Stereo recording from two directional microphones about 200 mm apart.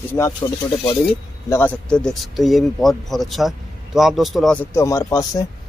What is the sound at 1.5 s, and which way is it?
Speech, 10° left (ahead or behind).